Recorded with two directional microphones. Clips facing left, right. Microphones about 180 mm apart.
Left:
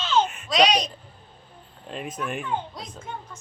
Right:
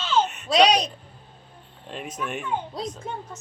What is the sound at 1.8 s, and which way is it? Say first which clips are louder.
Speech: left 1 dB; centre (ahead or behind).